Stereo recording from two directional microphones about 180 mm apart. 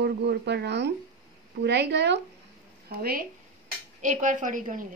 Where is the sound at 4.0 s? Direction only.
45° right (ahead or behind).